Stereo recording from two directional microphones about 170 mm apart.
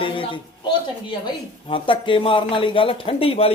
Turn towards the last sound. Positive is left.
turn(degrees=35)  # may be behind; listen again after turning